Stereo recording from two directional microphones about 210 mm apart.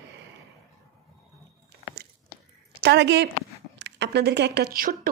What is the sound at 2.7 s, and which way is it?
A woman's voice, 55° right (ahead or behind).